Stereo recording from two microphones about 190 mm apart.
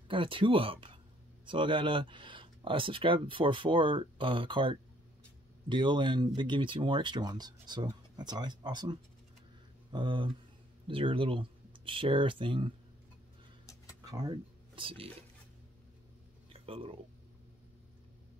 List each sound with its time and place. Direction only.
0.1 s speech: 25° right (ahead or behind)
14.0 s speech: 20° right (ahead or behind)
16.5 s speech: 30° right (ahead or behind)